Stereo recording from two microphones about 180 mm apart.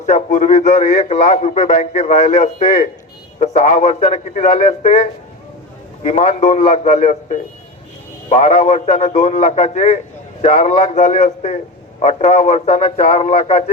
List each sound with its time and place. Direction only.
0.0 s a man's voice: 40° left (ahead or behind)